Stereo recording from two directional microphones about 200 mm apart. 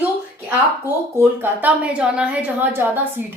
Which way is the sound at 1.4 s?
10° right (ahead or behind).